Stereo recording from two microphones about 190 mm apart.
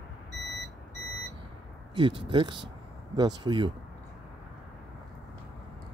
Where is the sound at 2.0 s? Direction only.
25° right (ahead or behind).